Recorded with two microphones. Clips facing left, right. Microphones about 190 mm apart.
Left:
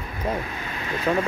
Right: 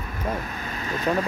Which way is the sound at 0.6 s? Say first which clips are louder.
Even; 40° right (ahead or behind).